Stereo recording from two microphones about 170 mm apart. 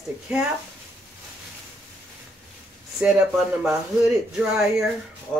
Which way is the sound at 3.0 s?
Centre (ahead or behind).